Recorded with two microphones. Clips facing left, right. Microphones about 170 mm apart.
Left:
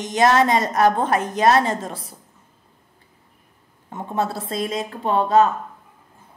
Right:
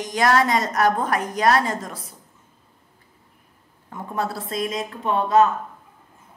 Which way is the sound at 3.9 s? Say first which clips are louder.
Left 3 dB; 25° left (ahead or behind).